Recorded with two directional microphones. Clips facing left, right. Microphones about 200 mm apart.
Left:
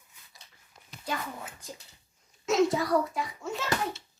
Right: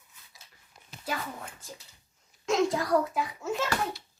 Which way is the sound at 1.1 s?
5° right (ahead or behind).